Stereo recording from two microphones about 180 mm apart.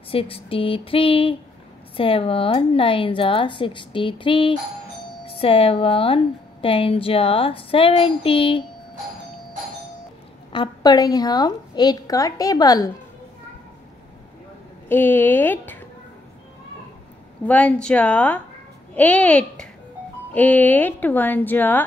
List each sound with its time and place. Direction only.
0.1 s a woman's voice: 30° left (ahead or behind)
10.5 s a woman's voice: 25° left (ahead or behind)
14.9 s a woman's voice: 10° left (ahead or behind)
17.5 s a woman's voice: 10° left (ahead or behind)